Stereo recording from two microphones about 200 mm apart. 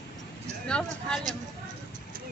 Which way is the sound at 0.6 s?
5° left (ahead or behind).